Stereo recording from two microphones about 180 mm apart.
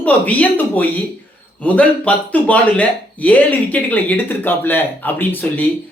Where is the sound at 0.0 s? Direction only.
10° left (ahead or behind).